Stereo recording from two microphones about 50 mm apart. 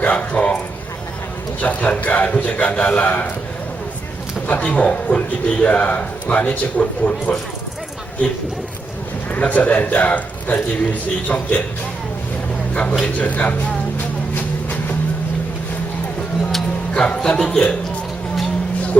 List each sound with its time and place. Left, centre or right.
0.0 s a sound: left
1.6 s a man's voice: left
4.4 s a man's voice: left
9.3 s a man's voice: left
12.7 s a man's voice: left
16.9 s speech: centre
17.4 s speech: centre